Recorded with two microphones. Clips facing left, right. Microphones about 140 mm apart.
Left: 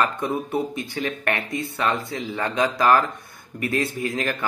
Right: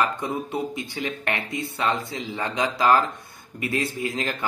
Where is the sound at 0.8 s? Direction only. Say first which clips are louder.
Left 2 dB; 20° right (ahead or behind).